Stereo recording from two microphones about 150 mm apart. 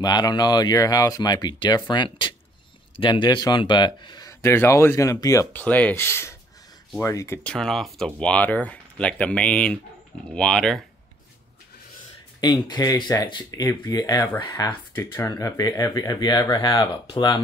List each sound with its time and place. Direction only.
0.0 s speech: 30° left (ahead or behind)
7.4 s speech: 5° left (ahead or behind)
12.6 s speech: 25° left (ahead or behind)